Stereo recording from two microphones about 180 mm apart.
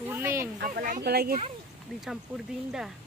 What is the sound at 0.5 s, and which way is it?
Speech, 55° right (ahead or behind).